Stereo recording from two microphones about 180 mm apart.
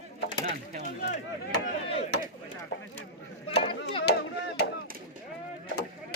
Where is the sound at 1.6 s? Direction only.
35° left (ahead or behind).